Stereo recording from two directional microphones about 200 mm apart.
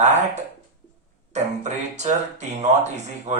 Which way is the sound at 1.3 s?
35° right (ahead or behind).